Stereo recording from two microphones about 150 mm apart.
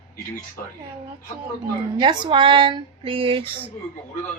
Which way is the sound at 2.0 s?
30° right (ahead or behind).